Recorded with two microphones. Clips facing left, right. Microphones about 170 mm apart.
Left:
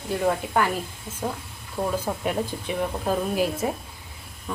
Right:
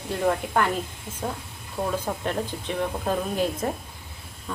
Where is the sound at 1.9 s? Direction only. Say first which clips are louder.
Left 1 dB; 10° left (ahead or behind).